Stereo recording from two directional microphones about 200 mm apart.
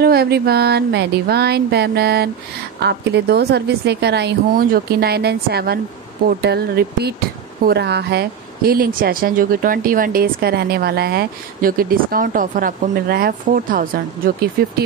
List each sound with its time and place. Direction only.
0.0 s a woman's voice: 50° right (ahead or behind)